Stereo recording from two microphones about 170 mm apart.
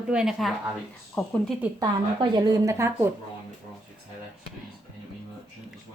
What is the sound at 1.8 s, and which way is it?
A woman's voice, 25° right (ahead or behind).